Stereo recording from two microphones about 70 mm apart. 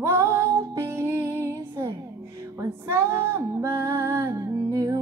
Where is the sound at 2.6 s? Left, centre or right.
Right.